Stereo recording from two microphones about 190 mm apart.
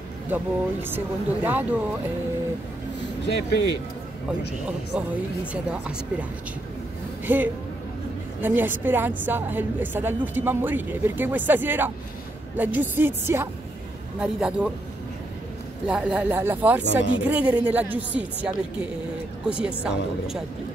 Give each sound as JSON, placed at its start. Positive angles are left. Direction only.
{"t": 0.3, "sound": "a woman's voice", "side_deg": -10}
{"t": 3.3, "sound": "speech", "side_deg": 70}
{"t": 4.6, "sound": "a woman's voice", "side_deg": -5}
{"t": 7.3, "sound": "a woman's voice", "side_deg": -10}
{"t": 15.9, "sound": "a woman's voice", "side_deg": -5}